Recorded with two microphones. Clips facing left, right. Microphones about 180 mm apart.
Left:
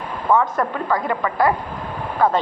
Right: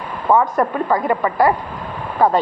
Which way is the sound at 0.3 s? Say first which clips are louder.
Right 3 dB; 20° right (ahead or behind).